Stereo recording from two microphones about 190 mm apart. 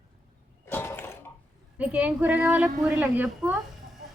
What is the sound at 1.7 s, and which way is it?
A woman's voice, 5° right (ahead or behind).